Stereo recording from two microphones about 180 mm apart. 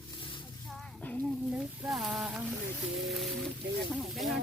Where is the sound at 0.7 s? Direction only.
10° left (ahead or behind).